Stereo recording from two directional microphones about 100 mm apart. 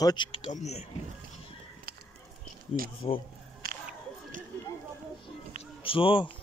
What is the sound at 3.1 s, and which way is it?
Speech, 90° left.